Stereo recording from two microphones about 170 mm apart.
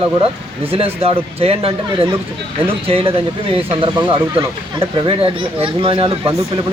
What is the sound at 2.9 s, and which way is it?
Speech, 35° right (ahead or behind).